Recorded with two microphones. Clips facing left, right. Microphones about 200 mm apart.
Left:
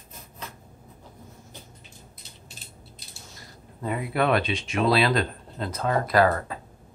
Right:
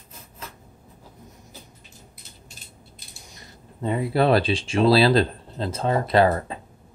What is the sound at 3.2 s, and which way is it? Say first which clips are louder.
Speech: right 1 dB; 20° right (ahead or behind).